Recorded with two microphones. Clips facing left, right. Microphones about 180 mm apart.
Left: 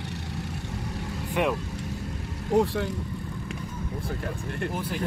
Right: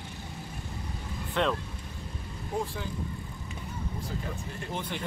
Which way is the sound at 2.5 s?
75° left (ahead or behind).